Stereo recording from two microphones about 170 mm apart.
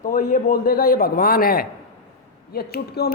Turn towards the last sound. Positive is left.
turn(degrees=65)  # may be behind; listen again after turning